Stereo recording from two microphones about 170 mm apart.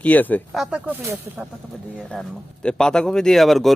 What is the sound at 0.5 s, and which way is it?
A man's voice, 5° right (ahead or behind).